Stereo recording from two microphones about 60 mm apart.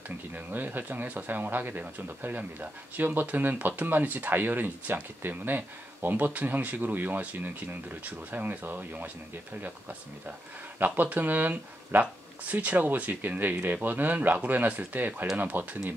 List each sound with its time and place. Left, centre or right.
0.5 s speech: right